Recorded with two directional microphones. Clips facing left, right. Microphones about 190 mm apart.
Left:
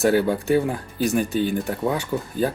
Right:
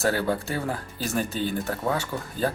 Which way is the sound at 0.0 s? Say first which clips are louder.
Left 6 dB; 15° left (ahead or behind).